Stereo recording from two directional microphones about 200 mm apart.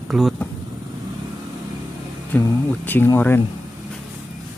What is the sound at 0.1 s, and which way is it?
Speech, centre (ahead or behind).